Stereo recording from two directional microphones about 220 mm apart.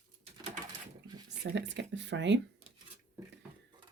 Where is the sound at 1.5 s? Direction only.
50° right (ahead or behind).